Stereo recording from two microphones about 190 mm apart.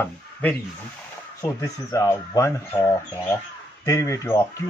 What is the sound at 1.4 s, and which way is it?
Speech, 15° left (ahead or behind).